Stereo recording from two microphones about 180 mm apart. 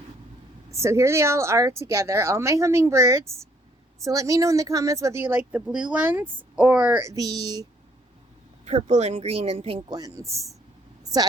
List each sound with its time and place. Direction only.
0.7 s speech: 15° right (ahead or behind)
8.6 s speech: 40° right (ahead or behind)
9.9 s speech: 20° right (ahead or behind)